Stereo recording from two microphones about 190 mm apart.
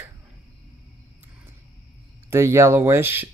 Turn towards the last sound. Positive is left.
turn(degrees=-10)  # may be behind; listen again after turning